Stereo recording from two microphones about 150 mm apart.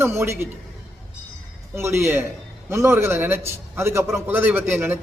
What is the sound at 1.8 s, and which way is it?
A man's voice, 15° right (ahead or behind).